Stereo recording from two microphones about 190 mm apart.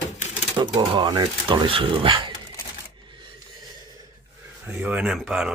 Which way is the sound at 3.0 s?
25° right (ahead or behind).